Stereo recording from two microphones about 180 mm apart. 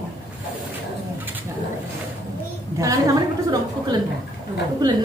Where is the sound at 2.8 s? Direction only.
20° right (ahead or behind).